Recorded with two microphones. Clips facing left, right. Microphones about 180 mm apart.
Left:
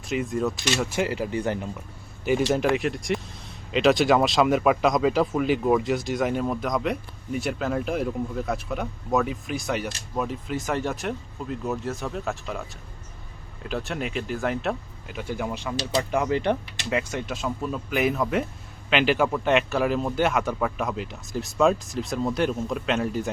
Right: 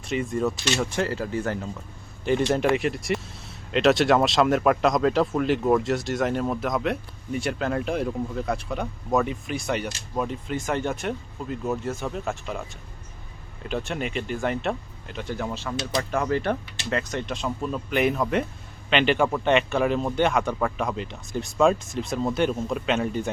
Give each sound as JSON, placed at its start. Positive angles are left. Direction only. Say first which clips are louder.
{"t": 0.1, "sound": "speech", "louder": "even", "side_deg": 0}
{"t": 1.0, "sound": "speech", "louder": "left 1 dB", "side_deg": 15}
{"t": 2.2, "sound": "speech", "louder": "even", "side_deg": 5}
{"t": 13.7, "sound": "speech", "louder": "right 1 dB", "side_deg": 0}